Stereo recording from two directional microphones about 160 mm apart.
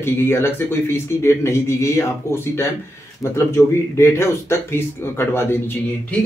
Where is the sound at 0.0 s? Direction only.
15° left (ahead or behind).